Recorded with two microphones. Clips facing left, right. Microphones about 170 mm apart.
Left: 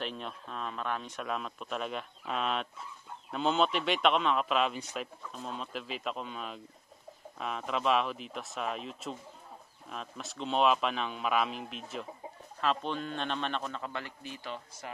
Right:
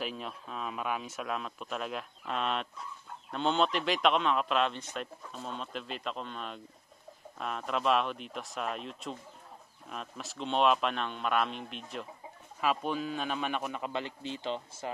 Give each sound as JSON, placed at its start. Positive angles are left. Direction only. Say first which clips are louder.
{"t": 0.0, "sound": "a man's voice", "louder": "right 1 dB", "side_deg": -5}
{"t": 12.5, "sound": "a man's voice", "louder": "right 1 dB", "side_deg": -10}